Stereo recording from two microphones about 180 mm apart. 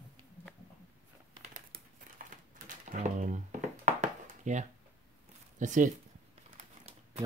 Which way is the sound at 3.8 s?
45° right (ahead or behind).